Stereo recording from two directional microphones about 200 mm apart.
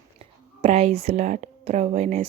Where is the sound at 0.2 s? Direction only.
30° right (ahead or behind).